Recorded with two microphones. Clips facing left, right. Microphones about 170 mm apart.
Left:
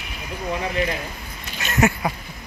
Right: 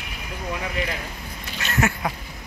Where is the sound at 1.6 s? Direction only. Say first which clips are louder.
Left 4 dB; 15° left (ahead or behind).